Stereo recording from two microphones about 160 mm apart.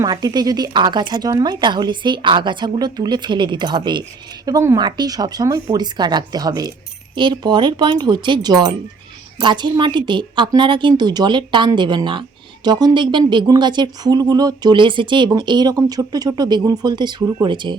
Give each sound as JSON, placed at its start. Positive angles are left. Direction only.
{"t": 0.0, "sound": "speech", "side_deg": -25}